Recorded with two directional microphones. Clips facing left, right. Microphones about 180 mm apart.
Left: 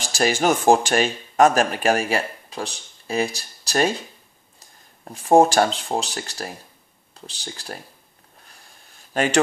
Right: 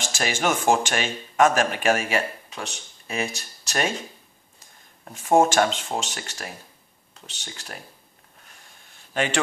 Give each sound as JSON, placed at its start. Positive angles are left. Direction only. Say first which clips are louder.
{"t": 0.0, "sound": "speech", "louder": "left 5 dB", "side_deg": 35}
{"t": 9.1, "sound": "speech", "louder": "left 4 dB", "side_deg": 40}